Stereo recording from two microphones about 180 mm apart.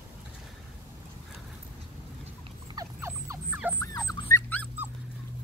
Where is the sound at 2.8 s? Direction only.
15° right (ahead or behind).